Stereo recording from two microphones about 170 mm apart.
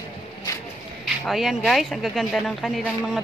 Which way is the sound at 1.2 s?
Centre (ahead or behind).